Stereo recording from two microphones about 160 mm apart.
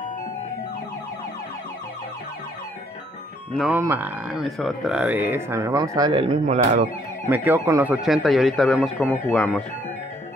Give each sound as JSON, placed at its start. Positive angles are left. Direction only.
{"t": 3.8, "sound": "speech", "side_deg": -10}
{"t": 6.2, "sound": "speech", "side_deg": -45}
{"t": 7.2, "sound": "speech", "side_deg": -10}